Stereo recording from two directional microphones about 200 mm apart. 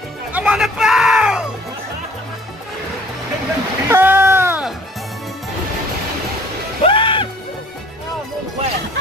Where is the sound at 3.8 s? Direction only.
10° right (ahead or behind).